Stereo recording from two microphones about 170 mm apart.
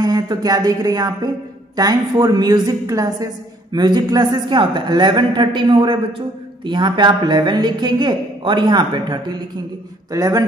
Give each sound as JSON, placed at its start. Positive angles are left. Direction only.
{"t": 0.0, "sound": "a woman's voice", "side_deg": -20}